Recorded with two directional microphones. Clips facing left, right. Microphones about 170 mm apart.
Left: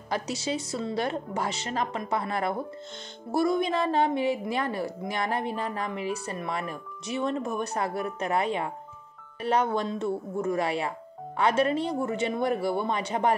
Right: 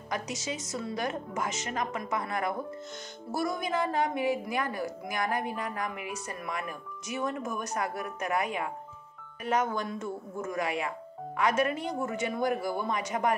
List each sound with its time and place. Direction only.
0.1 s a woman's voice: 30° left (ahead or behind)